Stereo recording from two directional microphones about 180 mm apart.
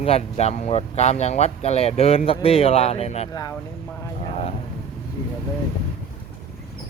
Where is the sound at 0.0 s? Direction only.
35° left (ahead or behind).